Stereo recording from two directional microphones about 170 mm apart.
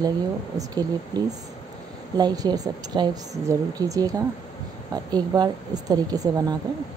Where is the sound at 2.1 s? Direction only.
25° right (ahead or behind).